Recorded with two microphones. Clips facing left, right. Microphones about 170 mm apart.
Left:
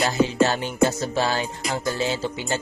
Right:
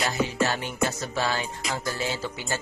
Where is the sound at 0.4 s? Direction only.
30° left (ahead or behind).